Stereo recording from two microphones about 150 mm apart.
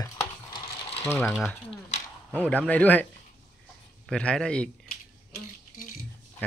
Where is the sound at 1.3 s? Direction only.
Centre (ahead or behind).